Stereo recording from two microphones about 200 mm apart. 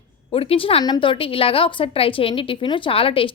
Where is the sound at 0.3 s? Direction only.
25° left (ahead or behind).